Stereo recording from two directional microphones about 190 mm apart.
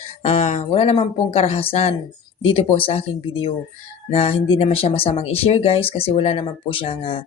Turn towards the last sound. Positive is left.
turn(degrees=30)  # may be behind; listen again after turning